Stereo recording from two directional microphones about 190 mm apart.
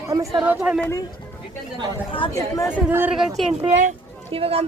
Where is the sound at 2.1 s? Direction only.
20° left (ahead or behind).